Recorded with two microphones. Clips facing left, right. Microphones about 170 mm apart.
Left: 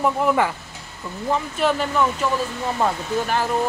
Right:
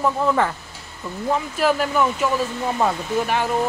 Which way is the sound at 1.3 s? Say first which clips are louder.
Right 1 dB; 5° right (ahead or behind).